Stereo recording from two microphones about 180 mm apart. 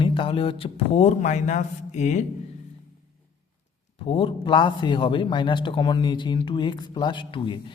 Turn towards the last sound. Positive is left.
turn(degrees=25)  # may be behind; listen again after turning